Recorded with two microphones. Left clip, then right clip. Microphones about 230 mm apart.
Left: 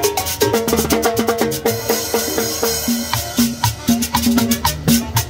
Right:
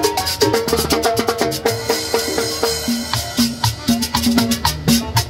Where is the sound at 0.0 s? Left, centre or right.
Left.